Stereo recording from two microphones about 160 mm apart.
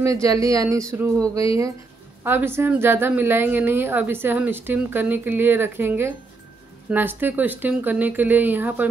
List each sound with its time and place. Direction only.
0.0 s a woman's voice: 20° right (ahead or behind)